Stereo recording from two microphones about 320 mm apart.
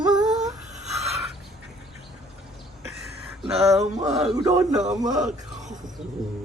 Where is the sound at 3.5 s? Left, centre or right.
Centre.